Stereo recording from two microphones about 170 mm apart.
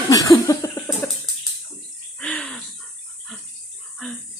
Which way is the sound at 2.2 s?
5° left (ahead or behind).